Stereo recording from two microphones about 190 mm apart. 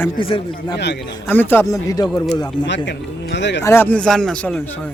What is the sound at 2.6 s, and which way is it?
Speech, 70° left (ahead or behind).